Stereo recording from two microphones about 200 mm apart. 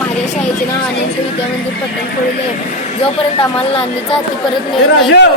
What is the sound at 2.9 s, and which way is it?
Speech, 30° left (ahead or behind).